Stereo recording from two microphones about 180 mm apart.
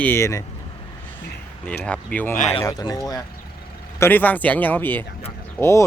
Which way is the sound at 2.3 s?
40° left (ahead or behind).